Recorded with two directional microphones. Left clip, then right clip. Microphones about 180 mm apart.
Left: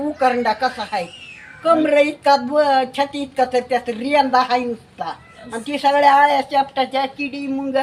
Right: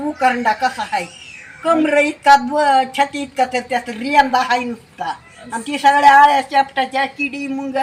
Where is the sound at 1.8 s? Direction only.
40° left (ahead or behind).